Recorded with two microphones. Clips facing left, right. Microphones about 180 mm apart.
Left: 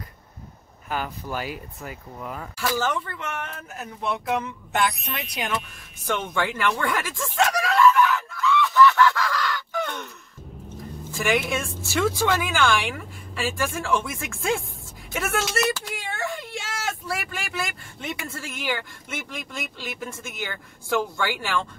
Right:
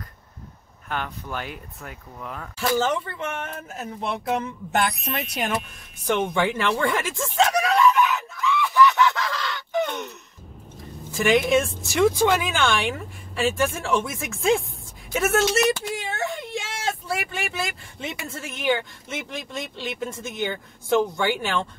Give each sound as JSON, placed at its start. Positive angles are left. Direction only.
{"t": 0.8, "sound": "speech", "side_deg": 5}
{"t": 2.6, "sound": "a woman's voice", "side_deg": -25}
{"t": 4.8, "sound": "speech", "side_deg": 0}
{"t": 6.0, "sound": "a woman's voice", "side_deg": -15}
{"t": 6.8, "sound": "screaming", "side_deg": -25}
{"t": 11.1, "sound": "a woman's voice", "side_deg": -20}